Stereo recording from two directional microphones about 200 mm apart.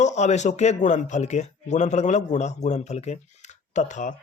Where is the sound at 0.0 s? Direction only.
35° left (ahead or behind).